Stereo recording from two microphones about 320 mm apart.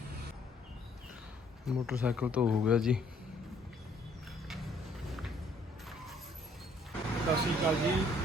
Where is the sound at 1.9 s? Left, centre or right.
Centre.